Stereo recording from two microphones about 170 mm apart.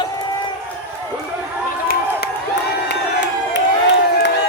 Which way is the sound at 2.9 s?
90° left.